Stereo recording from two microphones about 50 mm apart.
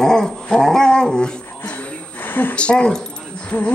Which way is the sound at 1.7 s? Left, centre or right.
Left.